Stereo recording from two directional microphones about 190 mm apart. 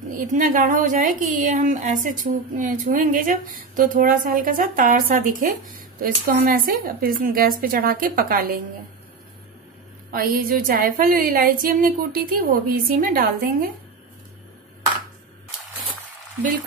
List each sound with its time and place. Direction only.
0.2 s a woman's voice: 45° right (ahead or behind)
10.1 s a woman's voice: 50° right (ahead or behind)